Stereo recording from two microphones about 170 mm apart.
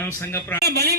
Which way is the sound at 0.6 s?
70° right (ahead or behind).